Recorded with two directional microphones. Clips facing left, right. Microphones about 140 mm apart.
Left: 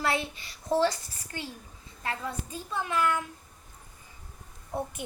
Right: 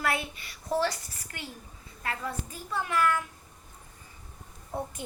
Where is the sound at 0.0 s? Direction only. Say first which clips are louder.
Left 1 dB; 30° left (ahead or behind).